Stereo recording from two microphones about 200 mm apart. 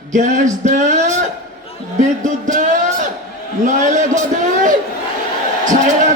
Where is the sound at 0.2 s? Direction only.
40° right (ahead or behind).